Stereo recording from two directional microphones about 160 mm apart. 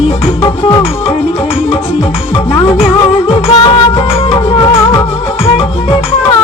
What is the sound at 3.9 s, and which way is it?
Music, 35° left (ahead or behind).